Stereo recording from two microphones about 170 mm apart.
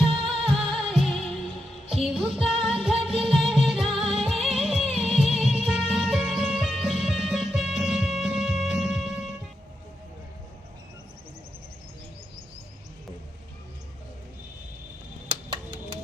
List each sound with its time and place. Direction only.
0.0 s music: 30° right (ahead or behind)
0.4 s music: centre (ahead or behind)